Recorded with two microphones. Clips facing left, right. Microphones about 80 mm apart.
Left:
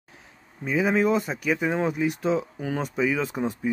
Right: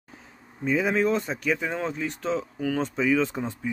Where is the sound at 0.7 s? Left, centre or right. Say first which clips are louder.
Left 1 dB; centre.